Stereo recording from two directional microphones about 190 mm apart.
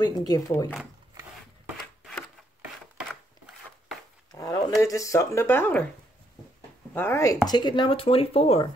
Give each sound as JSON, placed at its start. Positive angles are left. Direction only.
{"t": 0.0, "sound": "speech", "side_deg": 20}
{"t": 4.3, "sound": "speech", "side_deg": 20}
{"t": 6.9, "sound": "speech", "side_deg": 10}